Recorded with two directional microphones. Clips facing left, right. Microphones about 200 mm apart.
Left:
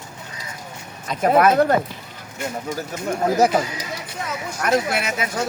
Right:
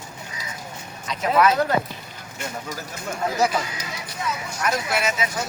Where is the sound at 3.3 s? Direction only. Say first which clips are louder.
Left 5 dB; 45° left (ahead or behind).